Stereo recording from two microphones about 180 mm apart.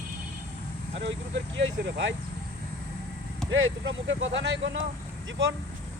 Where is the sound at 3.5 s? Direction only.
90° right.